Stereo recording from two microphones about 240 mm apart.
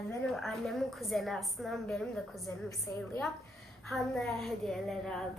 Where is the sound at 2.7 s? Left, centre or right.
Centre.